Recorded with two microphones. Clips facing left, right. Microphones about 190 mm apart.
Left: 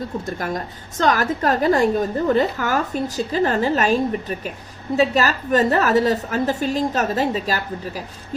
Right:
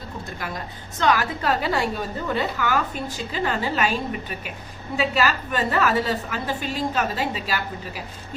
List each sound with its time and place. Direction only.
0.3 s a woman's voice: 45° left (ahead or behind)